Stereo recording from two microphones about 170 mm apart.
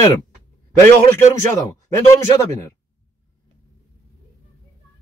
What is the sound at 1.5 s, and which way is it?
Speech, 20° left (ahead or behind).